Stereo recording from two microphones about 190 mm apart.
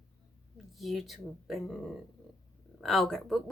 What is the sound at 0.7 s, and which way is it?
Speech, centre (ahead or behind).